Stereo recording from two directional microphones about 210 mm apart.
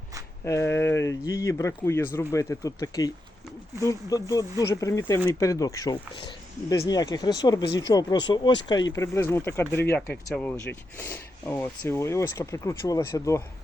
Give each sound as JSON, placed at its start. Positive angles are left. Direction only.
{"t": 0.4, "sound": "speech", "side_deg": 15}